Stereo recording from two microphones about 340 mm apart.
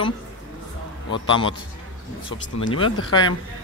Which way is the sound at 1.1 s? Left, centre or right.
Centre.